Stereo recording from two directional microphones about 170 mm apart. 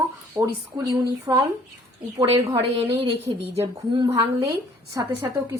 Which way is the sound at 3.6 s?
20° right (ahead or behind).